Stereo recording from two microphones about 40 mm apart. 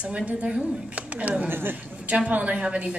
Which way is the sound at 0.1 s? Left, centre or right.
Right.